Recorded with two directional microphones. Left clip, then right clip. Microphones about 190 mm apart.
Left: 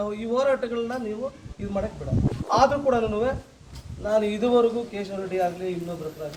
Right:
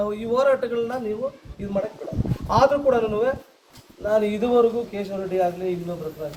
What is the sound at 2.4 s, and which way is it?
A man's voice, 20° right (ahead or behind).